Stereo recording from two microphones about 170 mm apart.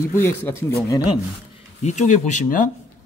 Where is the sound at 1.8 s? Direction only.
45° left (ahead or behind).